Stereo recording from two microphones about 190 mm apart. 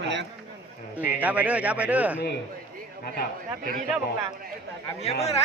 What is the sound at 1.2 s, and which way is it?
A man's voice, 10° right (ahead or behind).